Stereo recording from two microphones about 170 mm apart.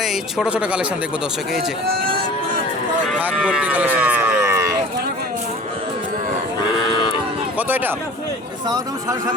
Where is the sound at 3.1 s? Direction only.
5° right (ahead or behind).